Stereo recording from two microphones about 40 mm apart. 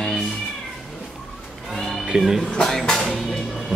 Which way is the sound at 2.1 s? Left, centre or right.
Right.